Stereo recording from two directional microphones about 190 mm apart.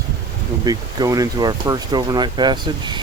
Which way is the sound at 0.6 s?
20° right (ahead or behind).